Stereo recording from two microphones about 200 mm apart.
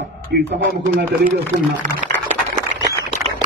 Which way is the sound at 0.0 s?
55° right (ahead or behind).